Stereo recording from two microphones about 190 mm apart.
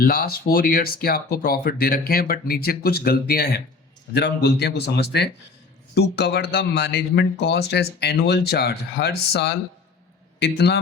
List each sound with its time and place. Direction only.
0.0 s speech: 50° left (ahead or behind)